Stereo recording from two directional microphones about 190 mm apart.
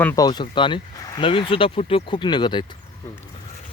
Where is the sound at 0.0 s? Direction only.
15° left (ahead or behind).